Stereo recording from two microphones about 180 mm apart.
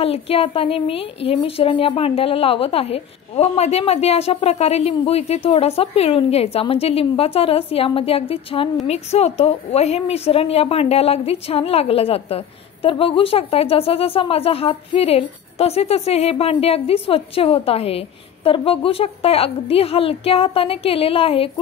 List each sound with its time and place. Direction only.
0.0 s a woman's voice: 35° left (ahead or behind)